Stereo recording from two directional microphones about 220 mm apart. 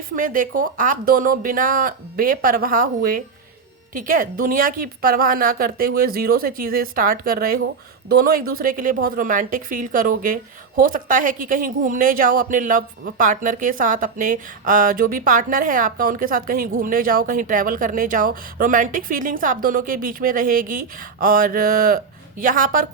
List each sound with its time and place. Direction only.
0.2 s a woman's voice: 40° right (ahead or behind)